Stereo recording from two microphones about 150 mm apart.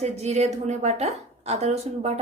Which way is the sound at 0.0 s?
45° right (ahead or behind).